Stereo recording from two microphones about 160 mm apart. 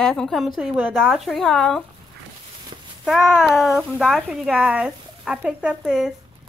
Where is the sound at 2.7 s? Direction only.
30° right (ahead or behind).